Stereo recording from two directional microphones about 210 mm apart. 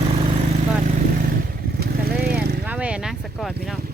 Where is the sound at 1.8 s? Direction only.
45° right (ahead or behind).